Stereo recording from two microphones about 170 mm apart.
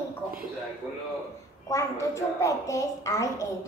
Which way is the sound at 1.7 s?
20° left (ahead or behind).